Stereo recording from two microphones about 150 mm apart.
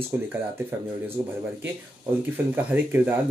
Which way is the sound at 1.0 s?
15° right (ahead or behind).